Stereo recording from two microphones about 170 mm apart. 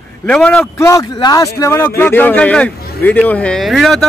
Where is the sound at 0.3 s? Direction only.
5° left (ahead or behind).